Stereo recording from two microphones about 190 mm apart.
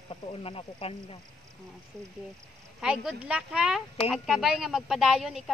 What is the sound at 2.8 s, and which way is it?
A woman's voice, 5° right (ahead or behind).